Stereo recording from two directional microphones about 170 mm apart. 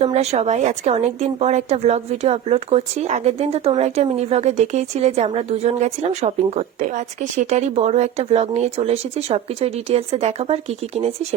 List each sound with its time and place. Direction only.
0.0 s a woman's voice: 40° right (ahead or behind)